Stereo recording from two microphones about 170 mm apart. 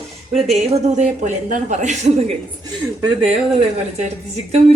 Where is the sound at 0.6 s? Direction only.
40° right (ahead or behind).